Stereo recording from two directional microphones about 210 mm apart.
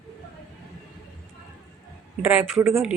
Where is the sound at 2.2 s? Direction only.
5° right (ahead or behind).